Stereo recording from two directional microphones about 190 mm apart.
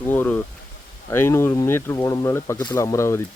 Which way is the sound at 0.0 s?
10° left (ahead or behind).